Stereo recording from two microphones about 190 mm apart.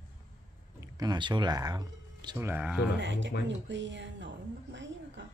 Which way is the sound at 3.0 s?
70° right (ahead or behind).